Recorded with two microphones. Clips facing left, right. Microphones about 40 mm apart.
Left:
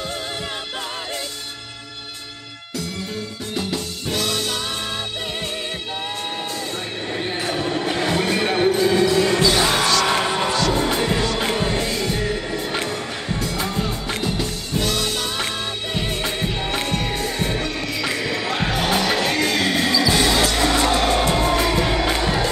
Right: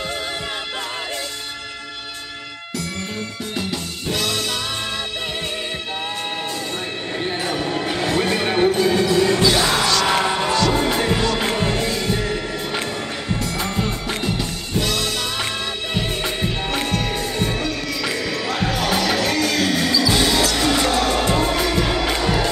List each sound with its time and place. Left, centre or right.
7.1 s a sound: centre
8.9 s basketball bounce: centre
9.6 s music: left
10.2 s music: centre
17.6 s music: centre
20.7 s music: centre
21.9 s crowd: centre